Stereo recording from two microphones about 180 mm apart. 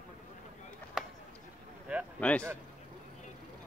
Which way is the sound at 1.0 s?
Centre (ahead or behind).